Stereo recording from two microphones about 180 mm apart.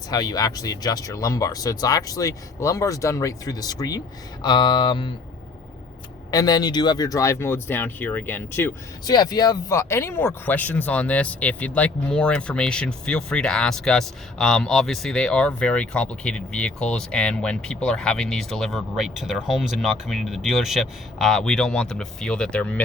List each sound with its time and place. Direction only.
0.1 s speech: 20° left (ahead or behind)
6.3 s speech: 20° left (ahead or behind); by 22.8 s 5° left (ahead or behind)